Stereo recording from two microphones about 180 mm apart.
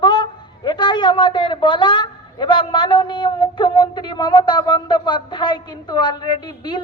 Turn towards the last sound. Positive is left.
turn(degrees=25)  # may be behind; listen again after turning